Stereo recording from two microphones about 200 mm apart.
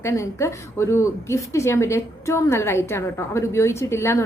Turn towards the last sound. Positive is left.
turn(degrees=10)  # may be behind; listen again after turning